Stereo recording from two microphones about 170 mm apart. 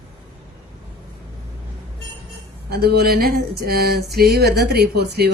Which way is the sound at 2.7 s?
70° right (ahead or behind).